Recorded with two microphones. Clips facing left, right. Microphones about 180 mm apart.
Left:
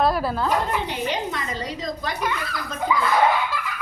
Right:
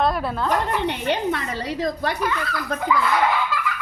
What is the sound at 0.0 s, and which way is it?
Speech, centre (ahead or behind).